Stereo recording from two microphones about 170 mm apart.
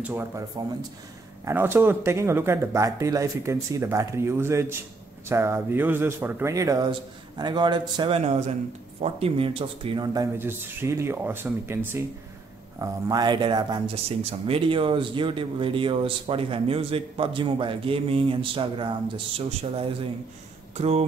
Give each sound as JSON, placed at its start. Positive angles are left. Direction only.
{"t": 0.0, "sound": "speech", "side_deg": -15}
{"t": 0.6, "sound": "a man's voice", "side_deg": -25}
{"t": 1.4, "sound": "a man's voice", "side_deg": -15}
{"t": 8.3, "sound": "speech", "side_deg": -40}
{"t": 10.3, "sound": "speech", "side_deg": -15}